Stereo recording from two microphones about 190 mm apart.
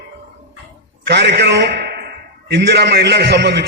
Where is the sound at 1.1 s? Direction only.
60° right (ahead or behind).